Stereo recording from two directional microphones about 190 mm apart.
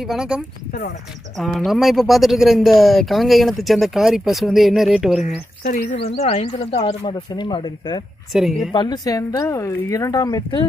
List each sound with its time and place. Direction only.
0.0 s speech: 5° right (ahead or behind)
1.4 s speech: centre (ahead or behind)
5.2 s speech: 40° left (ahead or behind)
8.3 s speech: centre (ahead or behind)
8.7 s speech: 20° left (ahead or behind)